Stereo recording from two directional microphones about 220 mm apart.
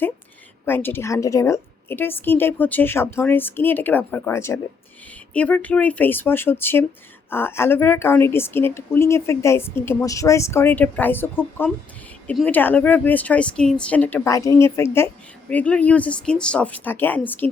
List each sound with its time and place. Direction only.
0.6 s a woman's voice: 10° left (ahead or behind)